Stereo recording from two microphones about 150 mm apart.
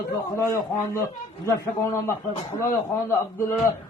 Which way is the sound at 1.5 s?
20° left (ahead or behind).